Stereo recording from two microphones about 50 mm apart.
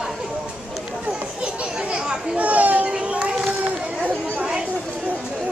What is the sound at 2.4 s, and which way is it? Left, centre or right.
Children playing, right.